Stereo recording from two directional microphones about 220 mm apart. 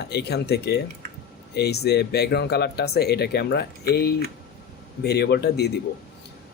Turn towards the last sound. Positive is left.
turn(degrees=50)  # may be behind; listen again after turning